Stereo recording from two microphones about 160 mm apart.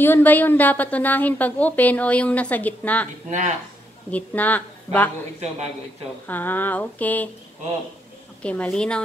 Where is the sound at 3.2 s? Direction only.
50° right (ahead or behind).